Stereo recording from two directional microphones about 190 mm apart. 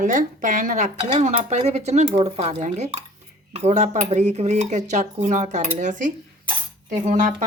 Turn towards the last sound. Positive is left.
turn(degrees=-40)  # may be behind; listen again after turning